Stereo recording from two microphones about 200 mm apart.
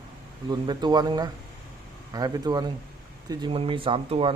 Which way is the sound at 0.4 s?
20° right (ahead or behind).